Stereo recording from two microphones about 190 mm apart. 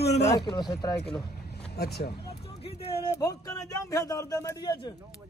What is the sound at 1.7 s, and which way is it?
Speech, 55° left (ahead or behind).